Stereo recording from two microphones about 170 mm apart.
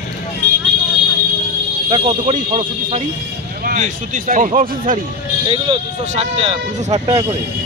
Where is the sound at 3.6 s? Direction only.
45° right (ahead or behind).